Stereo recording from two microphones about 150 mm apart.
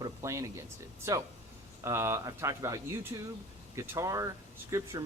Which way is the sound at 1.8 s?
20° right (ahead or behind).